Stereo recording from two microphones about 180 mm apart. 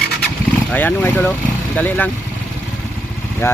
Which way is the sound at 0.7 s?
10° left (ahead or behind).